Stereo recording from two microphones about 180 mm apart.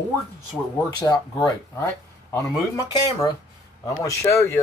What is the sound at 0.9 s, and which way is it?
Speech, 20° left (ahead or behind).